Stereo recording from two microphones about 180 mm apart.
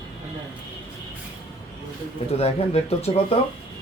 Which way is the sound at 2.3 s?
35° left (ahead or behind).